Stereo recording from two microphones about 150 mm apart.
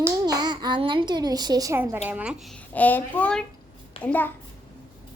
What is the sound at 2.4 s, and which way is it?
A child's voice, 5° left (ahead or behind).